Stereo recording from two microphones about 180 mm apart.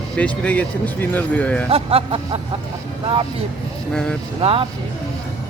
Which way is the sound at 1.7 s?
30° right (ahead or behind).